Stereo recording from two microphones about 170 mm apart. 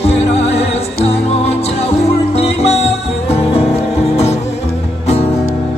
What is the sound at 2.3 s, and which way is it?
Music, 35° left (ahead or behind).